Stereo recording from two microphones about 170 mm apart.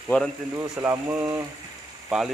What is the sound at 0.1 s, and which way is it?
Speech, 10° left (ahead or behind).